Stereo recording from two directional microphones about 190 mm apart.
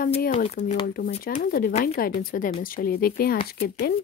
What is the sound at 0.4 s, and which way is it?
Speech, 45° left (ahead or behind).